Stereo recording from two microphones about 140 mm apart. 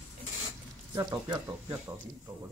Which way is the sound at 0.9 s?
30° right (ahead or behind).